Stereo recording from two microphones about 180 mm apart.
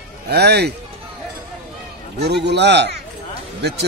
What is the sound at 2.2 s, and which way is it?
Speech, 70° right (ahead or behind).